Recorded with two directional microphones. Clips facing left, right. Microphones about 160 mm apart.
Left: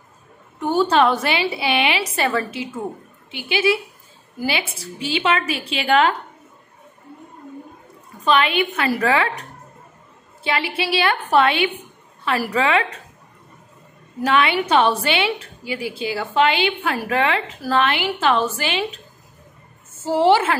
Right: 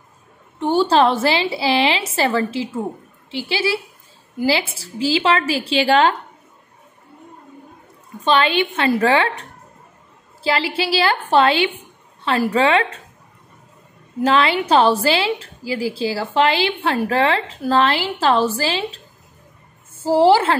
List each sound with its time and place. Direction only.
0.6 s a woman's voice: 30° right (ahead or behind)
8.2 s a woman's voice: 30° right (ahead or behind)
14.2 s a woman's voice: 30° right (ahead or behind)
20.0 s a woman's voice: 30° right (ahead or behind)